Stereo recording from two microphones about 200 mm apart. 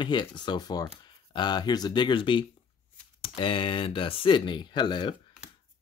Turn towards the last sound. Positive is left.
turn(degrees=20)  # may be behind; listen again after turning